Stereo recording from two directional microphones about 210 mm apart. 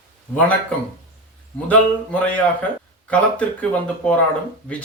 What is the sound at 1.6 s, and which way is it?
Speech, 5° left (ahead or behind).